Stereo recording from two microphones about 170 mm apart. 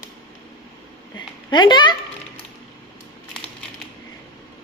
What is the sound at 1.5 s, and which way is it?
Speech, 25° left (ahead or behind).